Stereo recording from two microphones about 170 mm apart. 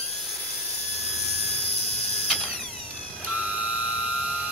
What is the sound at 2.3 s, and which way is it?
Mechanisms, 5° left (ahead or behind).